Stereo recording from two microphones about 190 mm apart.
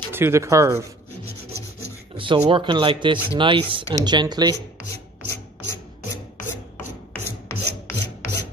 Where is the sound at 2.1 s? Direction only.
25° right (ahead or behind).